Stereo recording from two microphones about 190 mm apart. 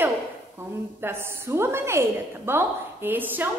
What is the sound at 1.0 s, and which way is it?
A woman's voice, 10° right (ahead or behind).